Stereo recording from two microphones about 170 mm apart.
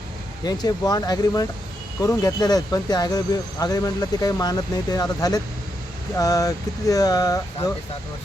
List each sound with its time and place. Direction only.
0.4 s speech: 25° left (ahead or behind)